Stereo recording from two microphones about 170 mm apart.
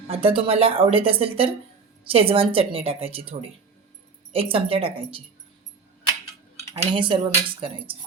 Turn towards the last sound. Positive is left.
turn(degrees=-30)  # may be behind; listen again after turning